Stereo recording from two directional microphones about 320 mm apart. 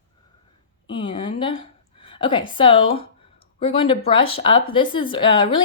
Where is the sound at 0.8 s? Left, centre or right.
Centre.